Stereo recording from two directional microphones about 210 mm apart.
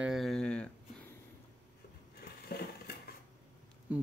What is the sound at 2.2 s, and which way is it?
Crushing, 45° left (ahead or behind).